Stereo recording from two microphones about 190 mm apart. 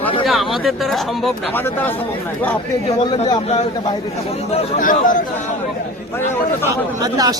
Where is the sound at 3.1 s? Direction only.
30° left (ahead or behind).